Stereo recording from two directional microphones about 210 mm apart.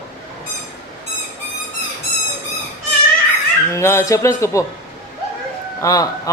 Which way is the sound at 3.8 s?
15° left (ahead or behind).